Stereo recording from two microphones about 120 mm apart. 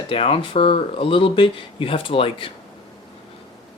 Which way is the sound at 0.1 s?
50° left (ahead or behind).